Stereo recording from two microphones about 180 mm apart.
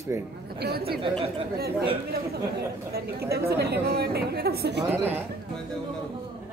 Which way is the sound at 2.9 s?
60° right (ahead or behind).